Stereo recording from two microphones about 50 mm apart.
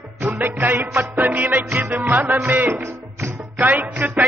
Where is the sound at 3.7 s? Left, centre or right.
Right.